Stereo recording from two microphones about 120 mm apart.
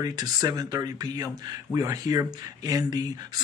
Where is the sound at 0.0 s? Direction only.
35° right (ahead or behind).